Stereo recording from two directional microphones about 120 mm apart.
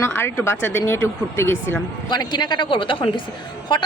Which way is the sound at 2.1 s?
35° left (ahead or behind).